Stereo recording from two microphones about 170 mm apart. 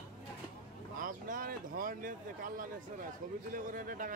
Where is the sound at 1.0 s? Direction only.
55° right (ahead or behind).